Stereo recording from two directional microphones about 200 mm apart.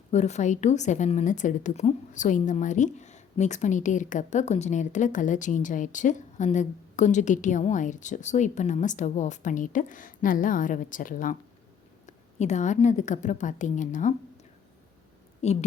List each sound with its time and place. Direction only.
0.1 s a woman's voice: 35° left (ahead or behind)
15.4 s a woman's voice: 35° left (ahead or behind)